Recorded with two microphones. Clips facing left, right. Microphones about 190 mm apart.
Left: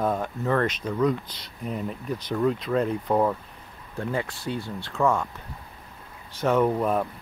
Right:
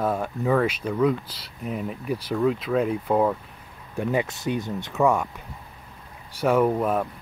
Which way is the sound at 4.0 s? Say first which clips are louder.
Right 4 dB; 15° right (ahead or behind).